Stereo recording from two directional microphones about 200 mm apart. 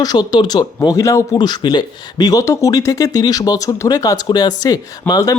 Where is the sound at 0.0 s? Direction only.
20° left (ahead or behind).